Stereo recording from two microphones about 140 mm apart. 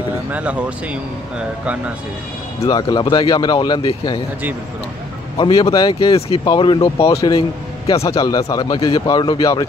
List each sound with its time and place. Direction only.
0.3 s speech: 10° right (ahead or behind)
2.7 s speech: 30° left (ahead or behind)
5.4 s speech: 40° left (ahead or behind)
6.1 s speech: 45° left (ahead or behind)
6.4 s speech: 35° left (ahead or behind)
7.0 s speech: 25° left (ahead or behind)